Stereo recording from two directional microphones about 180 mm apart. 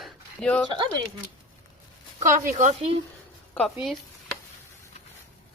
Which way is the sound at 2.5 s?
40° right (ahead or behind).